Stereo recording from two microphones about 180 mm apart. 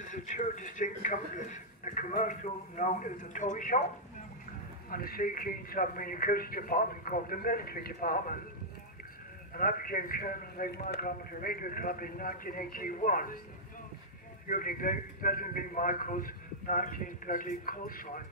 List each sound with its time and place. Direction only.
0.0 s a man's voice: 45° left (ahead or behind)
4.9 s a man's voice: 55° left (ahead or behind)
9.6 s a man's voice: 50° left (ahead or behind)
14.5 s a man's voice: 50° left (ahead or behind)